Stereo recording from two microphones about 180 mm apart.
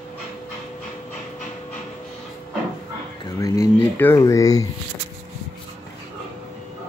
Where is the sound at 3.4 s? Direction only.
15° left (ahead or behind).